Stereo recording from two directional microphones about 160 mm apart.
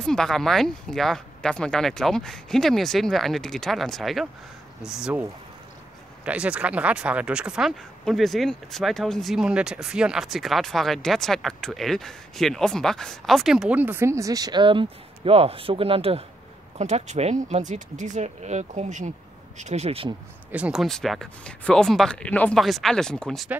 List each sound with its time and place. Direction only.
0.0 s speech: 5° left (ahead or behind)
6.2 s speech: 5° right (ahead or behind); by 20.2 s 35° right (ahead or behind)
20.5 s speech: 5° right (ahead or behind)